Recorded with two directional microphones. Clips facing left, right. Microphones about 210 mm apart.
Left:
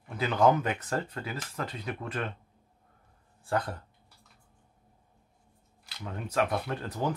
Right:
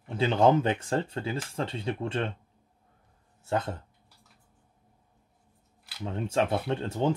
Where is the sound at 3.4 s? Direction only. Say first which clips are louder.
Right 1 dB; 25° right (ahead or behind).